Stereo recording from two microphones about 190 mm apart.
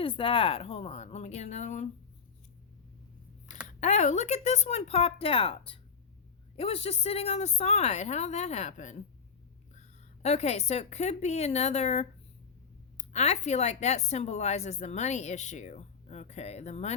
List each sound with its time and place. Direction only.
0.0 s speech: 30° left (ahead or behind)
3.8 s speech: 40° left (ahead or behind)
10.2 s speech: 35° left (ahead or behind)